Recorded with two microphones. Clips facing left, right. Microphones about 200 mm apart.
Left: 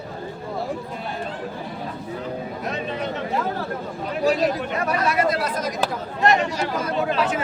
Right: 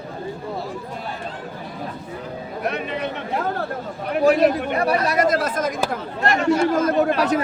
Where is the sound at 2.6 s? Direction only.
65° right (ahead or behind).